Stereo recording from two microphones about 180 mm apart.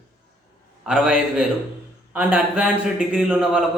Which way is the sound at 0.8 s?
5° right (ahead or behind).